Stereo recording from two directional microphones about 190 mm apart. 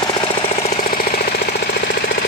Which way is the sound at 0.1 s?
25° left (ahead or behind).